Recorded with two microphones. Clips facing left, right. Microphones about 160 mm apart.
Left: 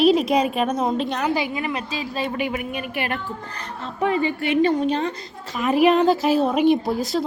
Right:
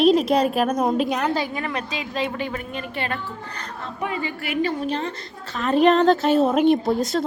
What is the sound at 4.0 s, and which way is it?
A woman's voice, 30° left (ahead or behind).